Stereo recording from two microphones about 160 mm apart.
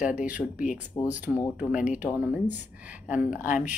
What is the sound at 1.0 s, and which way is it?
Speech, 25° left (ahead or behind).